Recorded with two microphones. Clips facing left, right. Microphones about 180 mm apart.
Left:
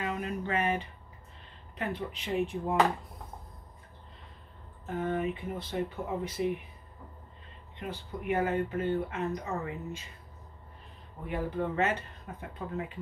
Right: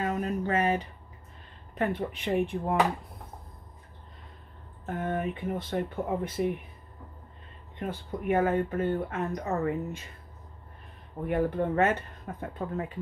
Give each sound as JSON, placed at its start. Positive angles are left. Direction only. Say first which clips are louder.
{"t": 0.0, "sound": "a sound", "louder": "right 4 dB", "side_deg": -40}
{"t": 1.8, "sound": "speech", "louder": "right 6 dB", "side_deg": -55}
{"t": 4.8, "sound": "speech", "louder": "even", "side_deg": -55}
{"t": 7.8, "sound": "speech", "louder": "right 4 dB", "side_deg": -50}
{"t": 11.2, "sound": "speech", "louder": "right 5 dB", "side_deg": -55}
{"t": 12.5, "sound": "speech", "louder": "right 3 dB", "side_deg": -40}